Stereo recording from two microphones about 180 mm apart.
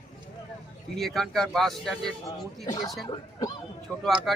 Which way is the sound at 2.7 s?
20° left (ahead or behind).